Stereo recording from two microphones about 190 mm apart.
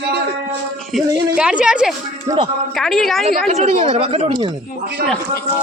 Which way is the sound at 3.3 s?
35° right (ahead or behind).